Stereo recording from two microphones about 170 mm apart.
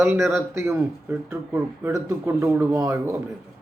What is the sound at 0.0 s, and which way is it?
Speech, 15° right (ahead or behind).